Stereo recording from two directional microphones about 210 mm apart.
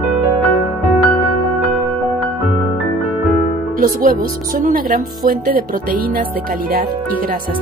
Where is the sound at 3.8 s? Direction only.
40° right (ahead or behind).